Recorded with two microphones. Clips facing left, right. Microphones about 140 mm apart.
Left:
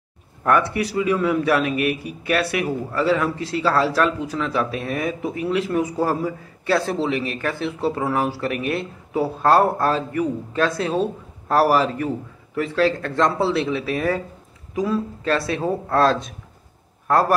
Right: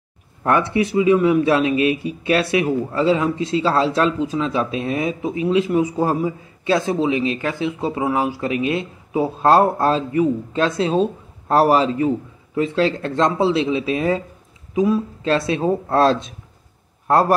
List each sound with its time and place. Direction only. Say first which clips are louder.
0.4 s speech: right 2 dB; 25° right (ahead or behind)